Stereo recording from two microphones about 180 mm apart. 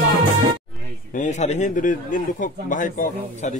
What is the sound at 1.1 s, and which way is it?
Speech, 45° left (ahead or behind).